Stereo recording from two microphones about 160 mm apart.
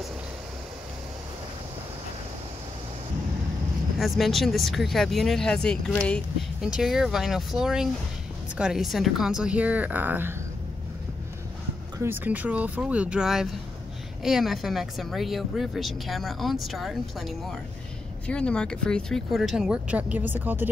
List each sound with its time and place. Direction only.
4.0 s a woman's voice: centre (ahead or behind)
12.0 s a woman's voice: 10° right (ahead or behind)